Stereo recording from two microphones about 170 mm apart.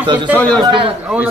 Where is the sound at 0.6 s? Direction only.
30° right (ahead or behind).